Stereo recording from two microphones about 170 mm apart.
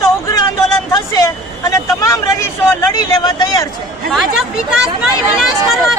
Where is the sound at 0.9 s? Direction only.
20° left (ahead or behind).